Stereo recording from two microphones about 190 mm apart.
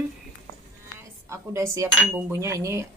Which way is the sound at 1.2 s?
15° right (ahead or behind).